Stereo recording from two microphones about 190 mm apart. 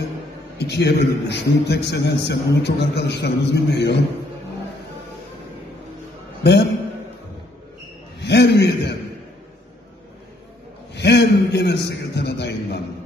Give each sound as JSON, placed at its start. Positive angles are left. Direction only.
{"t": 0.6, "sound": "a man's voice", "side_deg": 60}
{"t": 8.2, "sound": "a sound", "side_deg": 60}
{"t": 11.0, "sound": "a man's voice", "side_deg": 65}